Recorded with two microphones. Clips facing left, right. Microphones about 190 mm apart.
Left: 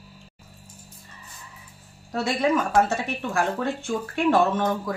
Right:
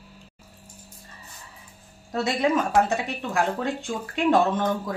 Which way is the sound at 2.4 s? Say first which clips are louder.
Left 1 dB; 15° right (ahead or behind).